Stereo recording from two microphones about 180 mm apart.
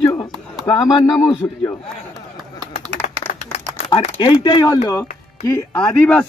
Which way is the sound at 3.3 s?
35° left (ahead or behind).